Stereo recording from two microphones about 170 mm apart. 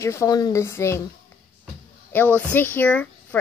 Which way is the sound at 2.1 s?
10° left (ahead or behind).